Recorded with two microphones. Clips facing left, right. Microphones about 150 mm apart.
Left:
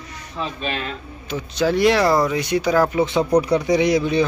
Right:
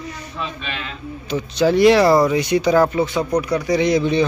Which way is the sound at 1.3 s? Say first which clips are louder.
Right 3 dB; centre (ahead or behind).